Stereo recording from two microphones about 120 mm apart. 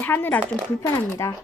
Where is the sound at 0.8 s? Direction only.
30° left (ahead or behind).